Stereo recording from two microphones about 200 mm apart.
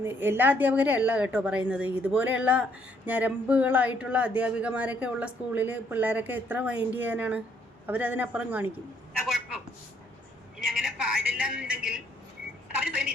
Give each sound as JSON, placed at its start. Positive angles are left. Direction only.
{"t": 0.0, "sound": "speech", "side_deg": -10}
{"t": 10.6, "sound": "a woman's voice", "side_deg": 0}